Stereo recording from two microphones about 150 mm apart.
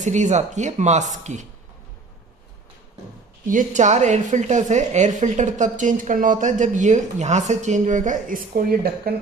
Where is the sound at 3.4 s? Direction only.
60° right (ahead or behind).